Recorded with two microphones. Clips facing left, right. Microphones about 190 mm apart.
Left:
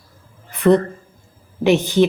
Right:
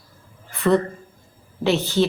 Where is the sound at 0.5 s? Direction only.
20° left (ahead or behind).